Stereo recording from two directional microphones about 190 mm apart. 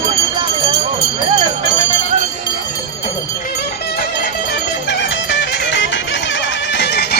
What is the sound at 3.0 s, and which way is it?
Music, 50° left (ahead or behind).